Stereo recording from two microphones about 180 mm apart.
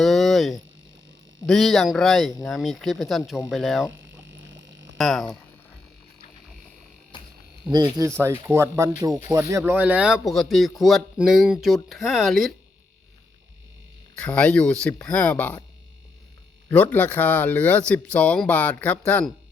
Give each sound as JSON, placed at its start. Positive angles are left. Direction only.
{"t": 0.0, "sound": "a sound", "side_deg": 0}
{"t": 1.5, "sound": "speech", "side_deg": 0}
{"t": 4.3, "sound": "frog", "side_deg": -85}
{"t": 4.9, "sound": "speech", "side_deg": 0}
{"t": 7.7, "sound": "speech", "side_deg": -20}
{"t": 14.2, "sound": "speech", "side_deg": 5}
{"t": 16.6, "sound": "speech", "side_deg": 10}